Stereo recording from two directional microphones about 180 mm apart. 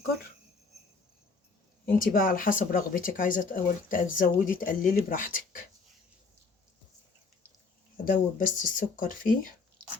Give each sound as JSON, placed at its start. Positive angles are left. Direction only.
{"t": 1.9, "sound": "speech", "side_deg": 50}
{"t": 8.0, "sound": "speech", "side_deg": 45}